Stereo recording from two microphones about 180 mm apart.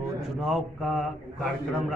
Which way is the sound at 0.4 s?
Centre (ahead or behind).